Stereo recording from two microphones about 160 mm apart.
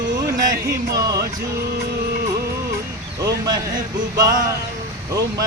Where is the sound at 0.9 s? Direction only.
20° right (ahead or behind).